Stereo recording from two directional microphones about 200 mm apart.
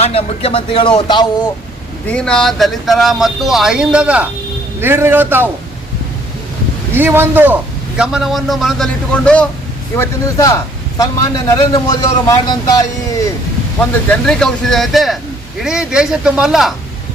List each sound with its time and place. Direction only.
0.0 s speech: 30° left (ahead or behind)
2.0 s a man's voice: 5° left (ahead or behind)
6.9 s a man's voice: 10° right (ahead or behind); by 12.9 s 20° left (ahead or behind)
13.7 s speech: 5° left (ahead or behind)